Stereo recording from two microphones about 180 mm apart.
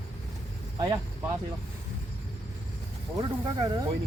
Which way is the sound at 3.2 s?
25° right (ahead or behind).